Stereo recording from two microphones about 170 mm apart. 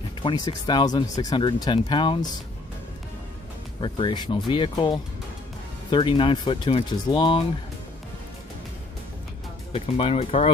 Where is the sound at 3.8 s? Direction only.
30° left (ahead or behind).